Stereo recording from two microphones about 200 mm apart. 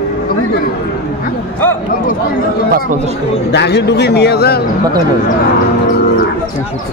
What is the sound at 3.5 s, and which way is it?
Speech, 55° left (ahead or behind).